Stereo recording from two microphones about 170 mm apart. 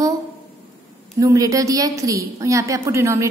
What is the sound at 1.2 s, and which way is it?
A woman's voice, 20° right (ahead or behind).